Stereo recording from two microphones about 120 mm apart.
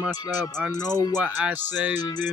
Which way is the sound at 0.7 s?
30° left (ahead or behind).